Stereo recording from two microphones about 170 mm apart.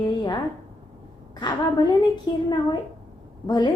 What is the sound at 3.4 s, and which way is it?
Speech, 25° left (ahead or behind).